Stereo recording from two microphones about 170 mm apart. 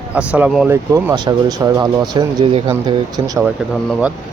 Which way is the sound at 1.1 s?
25° right (ahead or behind).